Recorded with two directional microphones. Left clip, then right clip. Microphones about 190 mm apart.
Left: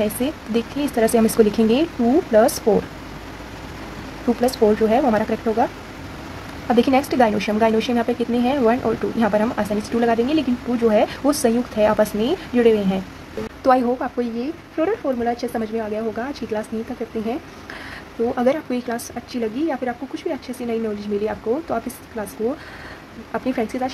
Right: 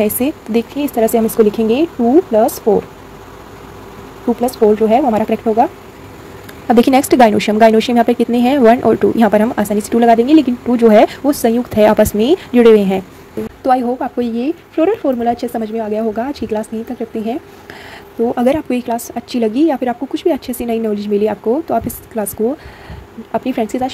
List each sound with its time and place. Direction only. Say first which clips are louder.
0.0 s a woman's voice: right 6 dB; 25° right (ahead or behind)
4.4 s a woman's voice: right 5 dB; 20° right (ahead or behind)
6.7 s speech: right 7 dB; 35° right (ahead or behind)
13.6 s a woman's voice: right 3 dB; 15° right (ahead or behind)
18.3 s a woman's voice: right 5 dB; 25° right (ahead or behind)
23.3 s a woman's voice: right 6 dB; 25° right (ahead or behind)